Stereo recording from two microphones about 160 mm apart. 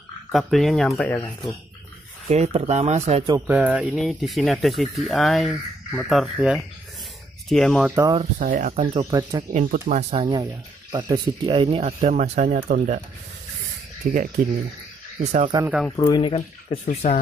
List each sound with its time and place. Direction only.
0.3 s speech: centre (ahead or behind)
2.2 s speech: 40° right (ahead or behind)
3.4 s speech: 10° right (ahead or behind)
7.9 s speech: 20° right (ahead or behind)
8.4 s speech: 55° right (ahead or behind)
10.1 s speech: 30° right (ahead or behind)
12.0 s speech: 50° right (ahead or behind)
14.1 s speech: 65° right (ahead or behind)
15.1 s speech: 50° right (ahead or behind)
16.0 s speech: 30° left (ahead or behind)
17.0 s speech: 60° left (ahead or behind)